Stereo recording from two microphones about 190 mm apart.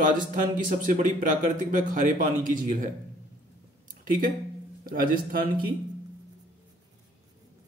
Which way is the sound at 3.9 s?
45° right (ahead or behind).